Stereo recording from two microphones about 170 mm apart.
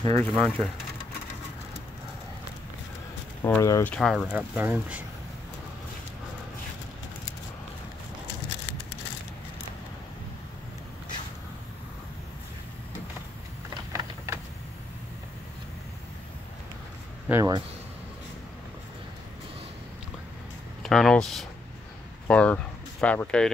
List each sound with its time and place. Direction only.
0.2 s speech: 10° left (ahead or behind)
3.4 s speech: 15° left (ahead or behind)
3.9 s speech: 5° left (ahead or behind)
13.9 s a sound: 15° right (ahead or behind)
17.3 s speech: 20° right (ahead or behind)
20.8 s speech: 5° left (ahead or behind)